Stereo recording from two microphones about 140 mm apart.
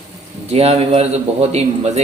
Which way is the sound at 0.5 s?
45° right (ahead or behind).